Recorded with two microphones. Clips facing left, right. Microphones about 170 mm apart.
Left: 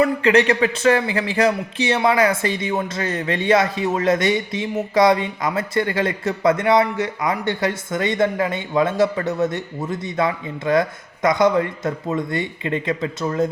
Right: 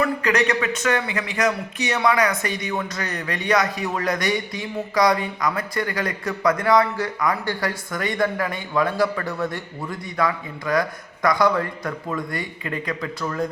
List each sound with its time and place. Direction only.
0.0 s speech: 30° left (ahead or behind)